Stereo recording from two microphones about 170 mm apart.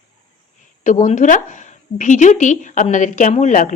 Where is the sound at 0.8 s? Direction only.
45° left (ahead or behind).